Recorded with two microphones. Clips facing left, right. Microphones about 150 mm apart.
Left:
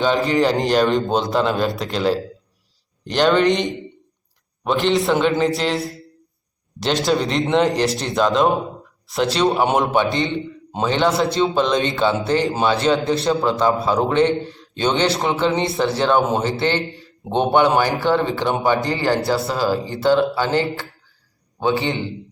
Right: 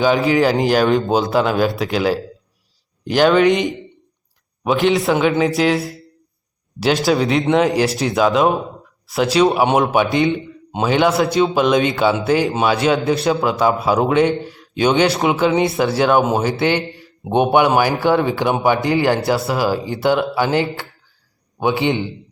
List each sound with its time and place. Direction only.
0.0 s speech: 5° right (ahead or behind)